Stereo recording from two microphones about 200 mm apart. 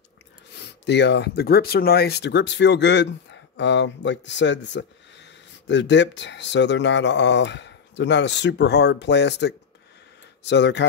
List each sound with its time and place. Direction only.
0.6 s speech: 60° left (ahead or behind)